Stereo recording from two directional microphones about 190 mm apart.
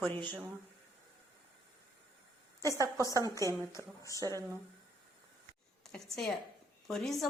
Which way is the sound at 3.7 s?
15° left (ahead or behind).